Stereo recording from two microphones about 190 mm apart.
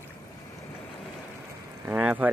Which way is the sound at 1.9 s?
10° right (ahead or behind).